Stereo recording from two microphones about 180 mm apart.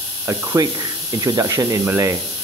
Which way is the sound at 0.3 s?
20° right (ahead or behind).